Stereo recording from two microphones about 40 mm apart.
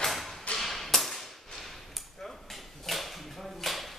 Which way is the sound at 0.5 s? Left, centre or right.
Centre.